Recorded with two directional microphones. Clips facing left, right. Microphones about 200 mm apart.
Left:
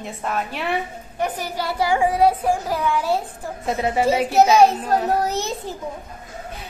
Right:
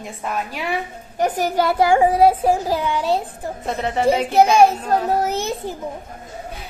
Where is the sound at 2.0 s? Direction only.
30° right (ahead or behind).